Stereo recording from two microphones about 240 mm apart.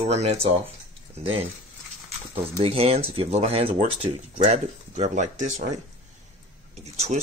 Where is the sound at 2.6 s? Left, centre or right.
Right.